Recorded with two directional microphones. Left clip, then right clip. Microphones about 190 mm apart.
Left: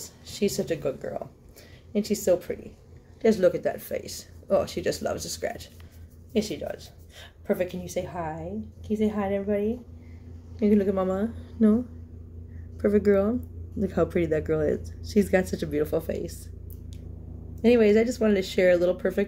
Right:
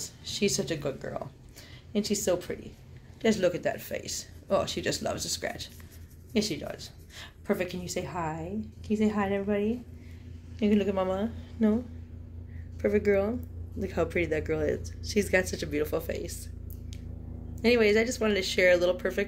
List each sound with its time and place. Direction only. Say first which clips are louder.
0.0 s speech: left 1 dB; 10° left (ahead or behind)
10.6 s speech: left 3 dB; 15° left (ahead or behind)
12.8 s speech: left 3 dB; 30° left (ahead or behind)
17.6 s speech: left 3 dB; 30° left (ahead or behind)